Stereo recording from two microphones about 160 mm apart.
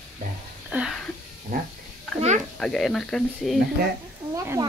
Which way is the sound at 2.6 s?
Centre (ahead or behind).